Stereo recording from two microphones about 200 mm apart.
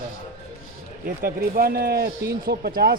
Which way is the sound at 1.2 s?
45° right (ahead or behind).